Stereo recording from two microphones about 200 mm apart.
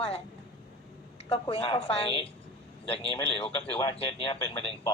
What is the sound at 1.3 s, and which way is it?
Speech, 30° left (ahead or behind).